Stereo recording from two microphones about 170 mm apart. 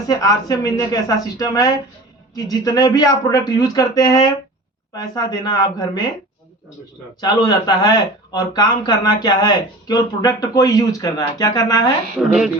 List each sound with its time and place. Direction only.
0.1 s speech: 20° left (ahead or behind)
7.2 s speech: 25° left (ahead or behind)